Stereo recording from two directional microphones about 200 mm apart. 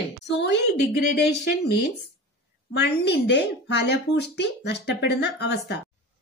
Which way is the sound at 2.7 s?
60° left (ahead or behind).